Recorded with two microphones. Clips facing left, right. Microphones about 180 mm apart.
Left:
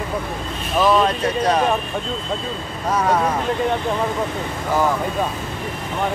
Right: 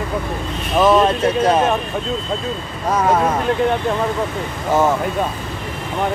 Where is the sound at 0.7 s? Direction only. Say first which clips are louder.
Right 3 dB; 25° right (ahead or behind).